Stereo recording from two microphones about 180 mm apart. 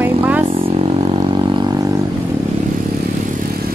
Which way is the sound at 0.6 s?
30° right (ahead or behind).